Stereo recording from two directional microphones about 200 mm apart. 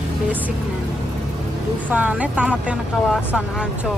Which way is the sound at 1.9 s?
5° right (ahead or behind).